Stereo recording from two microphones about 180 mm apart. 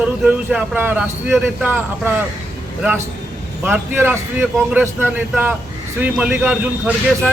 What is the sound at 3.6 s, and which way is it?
Speech, 10° right (ahead or behind).